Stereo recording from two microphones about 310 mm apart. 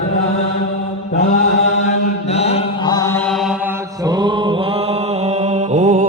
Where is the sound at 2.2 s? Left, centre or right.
Centre.